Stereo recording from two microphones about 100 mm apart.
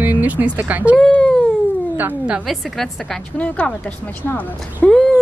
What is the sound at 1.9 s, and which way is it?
Speech, 15° right (ahead or behind).